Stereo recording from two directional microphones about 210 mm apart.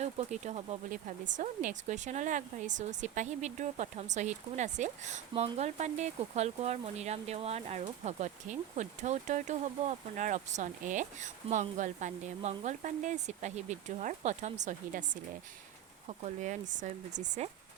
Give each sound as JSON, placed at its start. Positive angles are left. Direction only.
{"t": 0.0, "sound": "speech", "side_deg": -30}